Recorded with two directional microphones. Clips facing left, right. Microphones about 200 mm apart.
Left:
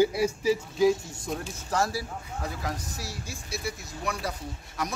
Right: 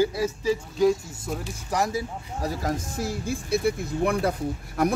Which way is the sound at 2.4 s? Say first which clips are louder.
Right 7 dB; 40° right (ahead or behind).